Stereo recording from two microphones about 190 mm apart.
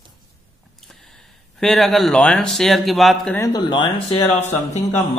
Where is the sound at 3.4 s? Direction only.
20° left (ahead or behind).